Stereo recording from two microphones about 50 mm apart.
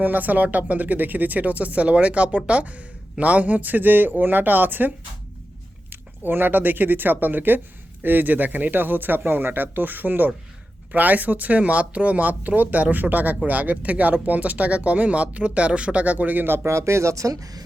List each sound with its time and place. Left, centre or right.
0.0 s speech: right
16.6 s speech: right